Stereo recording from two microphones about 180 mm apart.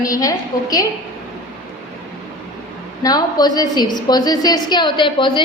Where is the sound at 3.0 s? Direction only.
20° left (ahead or behind).